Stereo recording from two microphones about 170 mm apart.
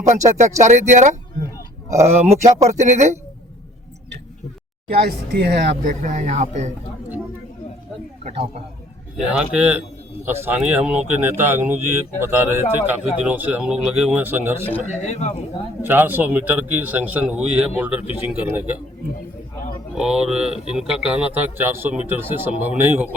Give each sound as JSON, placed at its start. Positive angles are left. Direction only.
{"t": 0.2, "sound": "speech", "side_deg": -45}
{"t": 4.9, "sound": "speech", "side_deg": -65}
{"t": 9.3, "sound": "speech", "side_deg": -5}
{"t": 14.7, "sound": "speech", "side_deg": 40}
{"t": 15.8, "sound": "speech", "side_deg": -10}
{"t": 20.0, "sound": "speech", "side_deg": -5}